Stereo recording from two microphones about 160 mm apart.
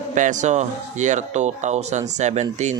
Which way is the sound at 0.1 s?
50° right (ahead or behind).